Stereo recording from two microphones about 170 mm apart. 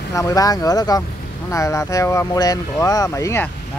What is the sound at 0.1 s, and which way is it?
Speech, 20° left (ahead or behind).